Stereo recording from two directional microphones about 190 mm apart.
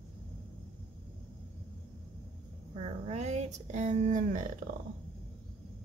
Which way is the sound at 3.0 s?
35° right (ahead or behind).